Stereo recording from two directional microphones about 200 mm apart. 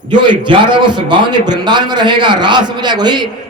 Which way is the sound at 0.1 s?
25° right (ahead or behind).